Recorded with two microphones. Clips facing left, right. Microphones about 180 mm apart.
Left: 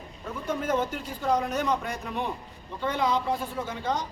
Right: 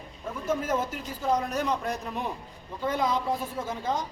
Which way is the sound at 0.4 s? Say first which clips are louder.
Left 1 dB; 5° right (ahead or behind).